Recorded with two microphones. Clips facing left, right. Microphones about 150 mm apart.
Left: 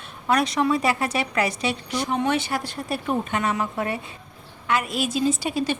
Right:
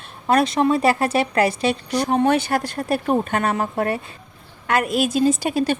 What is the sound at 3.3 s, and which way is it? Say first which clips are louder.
A woman's voice: right 3 dB; 50° right (ahead or behind).